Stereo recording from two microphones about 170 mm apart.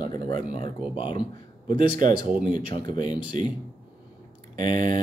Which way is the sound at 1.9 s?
55° right (ahead or behind).